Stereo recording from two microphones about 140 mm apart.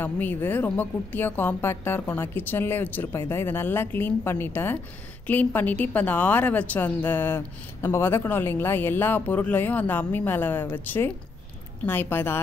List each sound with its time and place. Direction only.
0.0 s a woman's voice: 15° left (ahead or behind)